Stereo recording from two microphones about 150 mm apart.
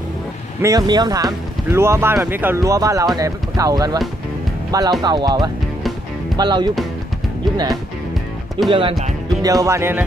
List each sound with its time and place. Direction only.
0.6 s speech: 25° right (ahead or behind)
8.6 s speech: 35° right (ahead or behind)
9.4 s speech: 25° right (ahead or behind)